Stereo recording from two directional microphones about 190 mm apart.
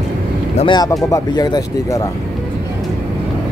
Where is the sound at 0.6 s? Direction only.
20° left (ahead or behind).